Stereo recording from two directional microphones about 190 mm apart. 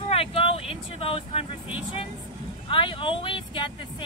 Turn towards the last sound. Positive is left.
turn(degrees=25)  # may be behind; listen again after turning